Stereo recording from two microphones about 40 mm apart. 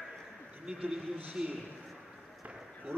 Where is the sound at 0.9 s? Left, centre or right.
Centre.